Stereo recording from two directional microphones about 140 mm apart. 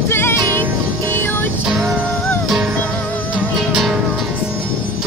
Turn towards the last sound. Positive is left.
turn(degrees=-5)  # may be behind; listen again after turning